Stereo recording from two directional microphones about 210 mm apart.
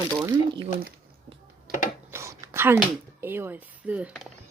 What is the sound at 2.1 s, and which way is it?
Whispering, 10° right (ahead or behind).